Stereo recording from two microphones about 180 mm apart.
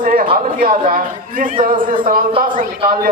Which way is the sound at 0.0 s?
50° right (ahead or behind).